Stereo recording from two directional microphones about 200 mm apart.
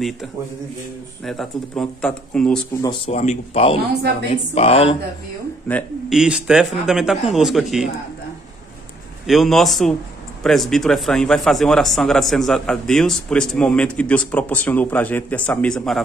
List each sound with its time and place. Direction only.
1.2 s a man's voice: centre (ahead or behind)
3.1 s speech: 35° left (ahead or behind)
3.9 s a woman's voice: 55° right (ahead or behind)
4.3 s speech: 30° left (ahead or behind)
5.7 s a man's voice: 5° left (ahead or behind)
9.2 s a man's voice: centre (ahead or behind)